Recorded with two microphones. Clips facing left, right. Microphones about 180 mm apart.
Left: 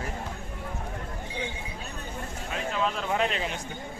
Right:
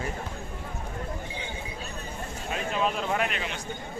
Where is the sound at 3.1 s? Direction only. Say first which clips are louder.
Left 2 dB; 30° left (ahead or behind).